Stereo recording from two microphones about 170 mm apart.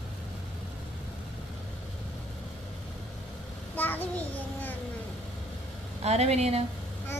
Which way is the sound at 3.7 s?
10° left (ahead or behind).